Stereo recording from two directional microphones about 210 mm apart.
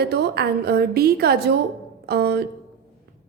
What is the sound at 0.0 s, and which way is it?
A woman's voice, 50° right (ahead or behind).